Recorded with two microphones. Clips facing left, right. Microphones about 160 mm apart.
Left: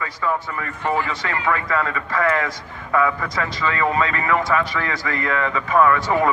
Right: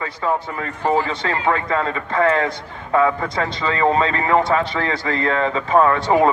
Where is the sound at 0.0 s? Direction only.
30° right (ahead or behind).